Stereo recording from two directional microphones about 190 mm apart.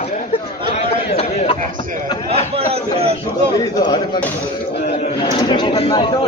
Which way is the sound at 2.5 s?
30° right (ahead or behind).